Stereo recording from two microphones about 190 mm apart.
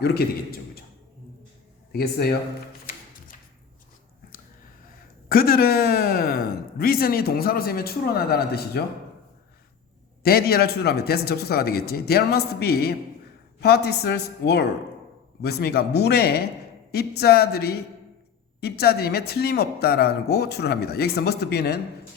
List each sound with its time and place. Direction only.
0.0 s a man's voice: 55° left (ahead or behind)
1.9 s speech: 55° left (ahead or behind)
5.3 s speech: 50° left (ahead or behind)
10.2 s speech: 55° left (ahead or behind)